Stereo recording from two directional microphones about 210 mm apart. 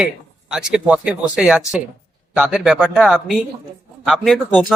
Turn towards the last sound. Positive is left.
turn(degrees=0)  # may be behind; listen again after turning